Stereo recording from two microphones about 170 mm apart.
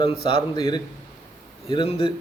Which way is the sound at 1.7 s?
30° left (ahead or behind).